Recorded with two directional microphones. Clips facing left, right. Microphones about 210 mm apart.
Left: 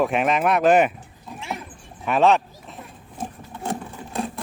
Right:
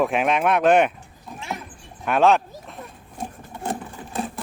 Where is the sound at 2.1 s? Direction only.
Centre (ahead or behind).